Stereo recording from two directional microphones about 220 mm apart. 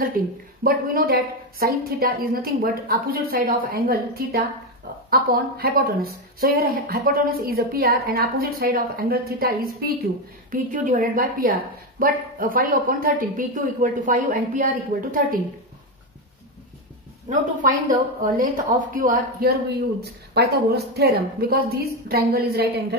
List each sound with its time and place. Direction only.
0.2 s a woman's voice: 40° right (ahead or behind)
17.3 s a woman's voice: 35° right (ahead or behind)